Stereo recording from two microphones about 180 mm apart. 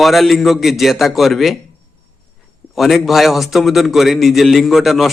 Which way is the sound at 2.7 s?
Centre (ahead or behind).